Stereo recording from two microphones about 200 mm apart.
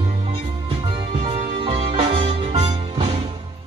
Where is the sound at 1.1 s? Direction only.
30° right (ahead or behind).